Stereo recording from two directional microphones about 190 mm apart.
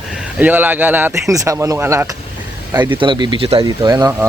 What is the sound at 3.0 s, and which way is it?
Speech, 25° right (ahead or behind).